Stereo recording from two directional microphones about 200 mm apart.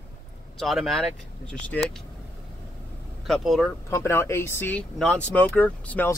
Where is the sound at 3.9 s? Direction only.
15° left (ahead or behind).